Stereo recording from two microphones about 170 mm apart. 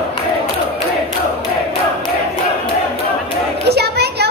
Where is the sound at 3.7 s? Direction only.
75° right (ahead or behind).